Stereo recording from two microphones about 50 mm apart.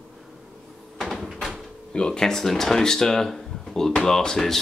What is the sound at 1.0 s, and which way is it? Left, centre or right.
Door, centre.